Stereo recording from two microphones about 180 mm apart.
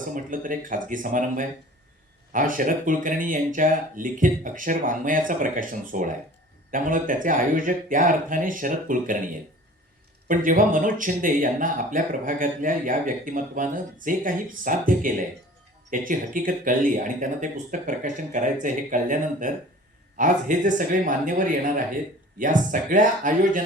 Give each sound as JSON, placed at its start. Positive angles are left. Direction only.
{"t": 0.1, "sound": "speech", "side_deg": -50}
{"t": 10.2, "sound": "speech", "side_deg": -50}